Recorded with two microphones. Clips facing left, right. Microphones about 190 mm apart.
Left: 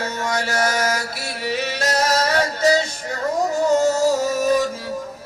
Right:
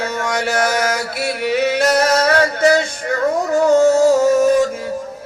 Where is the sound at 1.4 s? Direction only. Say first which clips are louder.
Right 7 dB; 60° right (ahead or behind).